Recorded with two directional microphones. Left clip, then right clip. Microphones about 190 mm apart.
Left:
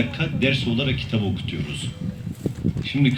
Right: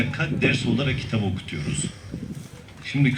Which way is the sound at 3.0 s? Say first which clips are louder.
Left 1 dB; 45° right (ahead or behind).